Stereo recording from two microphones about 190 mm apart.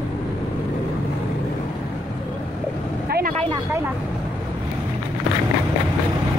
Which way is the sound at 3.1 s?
50° right (ahead or behind).